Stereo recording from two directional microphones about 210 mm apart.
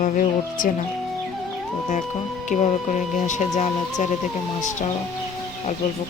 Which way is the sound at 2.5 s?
35° left (ahead or behind).